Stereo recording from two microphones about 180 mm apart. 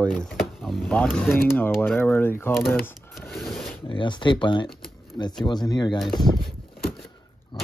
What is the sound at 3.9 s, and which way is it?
Speech, 25° left (ahead or behind).